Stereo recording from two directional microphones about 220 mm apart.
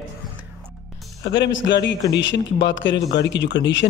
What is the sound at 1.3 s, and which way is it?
A man's voice, 55° left (ahead or behind).